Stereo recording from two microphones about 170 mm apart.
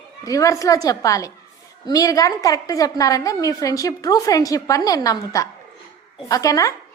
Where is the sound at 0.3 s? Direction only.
20° left (ahead or behind).